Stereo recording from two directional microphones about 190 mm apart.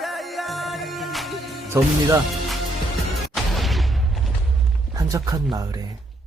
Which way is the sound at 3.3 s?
Centre (ahead or behind).